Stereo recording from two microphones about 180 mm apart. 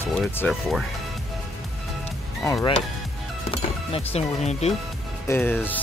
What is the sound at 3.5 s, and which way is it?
Speech, 35° left (ahead or behind).